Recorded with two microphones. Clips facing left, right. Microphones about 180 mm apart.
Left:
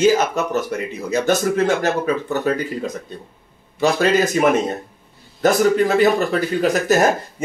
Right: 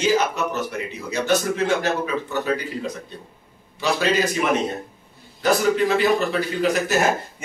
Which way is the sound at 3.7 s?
45° left (ahead or behind).